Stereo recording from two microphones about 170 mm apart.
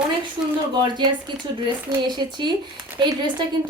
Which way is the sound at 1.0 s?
25° right (ahead or behind).